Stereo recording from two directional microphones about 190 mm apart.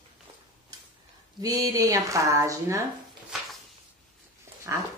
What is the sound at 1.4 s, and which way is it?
A woman's voice, 20° right (ahead or behind).